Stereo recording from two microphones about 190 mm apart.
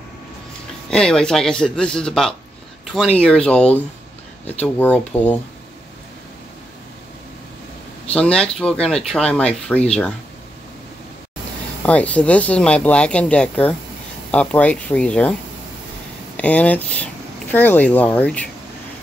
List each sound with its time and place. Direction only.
0.8 s speech: 5° left (ahead or behind)
8.1 s speech: 5° left (ahead or behind)
11.8 s speech: 5° left (ahead or behind)
16.3 s speech: 5° left (ahead or behind)